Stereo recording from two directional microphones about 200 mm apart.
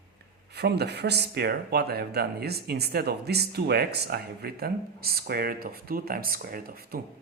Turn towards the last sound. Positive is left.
turn(degrees=-50)  # may be behind; listen again after turning